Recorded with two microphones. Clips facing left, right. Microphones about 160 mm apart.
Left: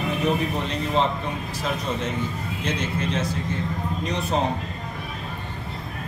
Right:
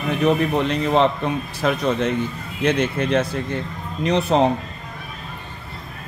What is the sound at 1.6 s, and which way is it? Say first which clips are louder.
A man's voice: right 8 dB; 65° right (ahead or behind).